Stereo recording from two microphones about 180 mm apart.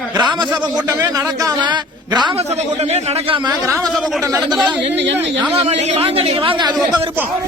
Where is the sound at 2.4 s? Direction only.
35° right (ahead or behind).